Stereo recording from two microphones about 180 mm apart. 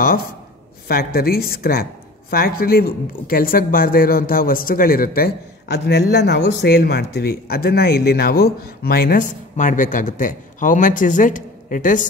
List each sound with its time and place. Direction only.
0.8 s a woman's voice: 55° left (ahead or behind)